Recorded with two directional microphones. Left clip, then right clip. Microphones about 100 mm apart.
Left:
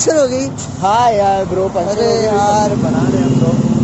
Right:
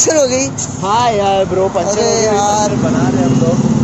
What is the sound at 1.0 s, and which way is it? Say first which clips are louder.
Speech: right 1 dB; 60° left (ahead or behind).